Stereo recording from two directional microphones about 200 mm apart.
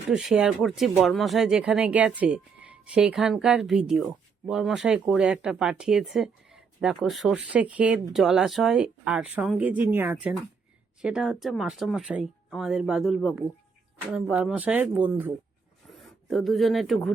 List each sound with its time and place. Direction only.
0.1 s speech: centre (ahead or behind)
16.3 s speech: centre (ahead or behind)